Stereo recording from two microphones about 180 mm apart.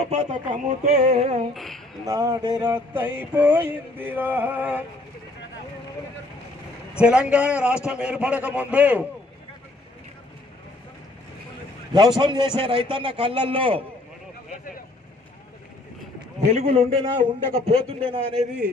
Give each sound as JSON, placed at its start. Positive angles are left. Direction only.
{"t": 0.0, "sound": "a man's voice", "side_deg": -40}
{"t": 1.5, "sound": "a woman's voice", "side_deg": 0}
{"t": 2.0, "sound": "a sound", "side_deg": -20}
{"t": 7.0, "sound": "a sound", "side_deg": -5}
{"t": 12.2, "sound": "a man's voice", "side_deg": -25}
{"t": 16.3, "sound": "a man's voice", "side_deg": -35}